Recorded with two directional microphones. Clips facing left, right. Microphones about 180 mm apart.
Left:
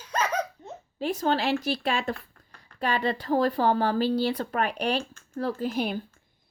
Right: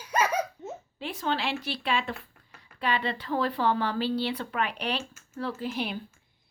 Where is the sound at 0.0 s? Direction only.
10° right (ahead or behind).